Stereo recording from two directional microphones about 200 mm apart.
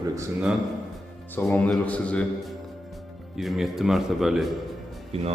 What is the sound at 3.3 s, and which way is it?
A man's voice, centre (ahead or behind).